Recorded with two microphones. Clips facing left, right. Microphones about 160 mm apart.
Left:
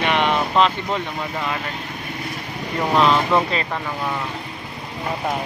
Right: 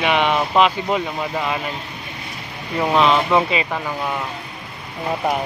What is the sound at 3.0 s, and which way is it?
Speech, 5° right (ahead or behind).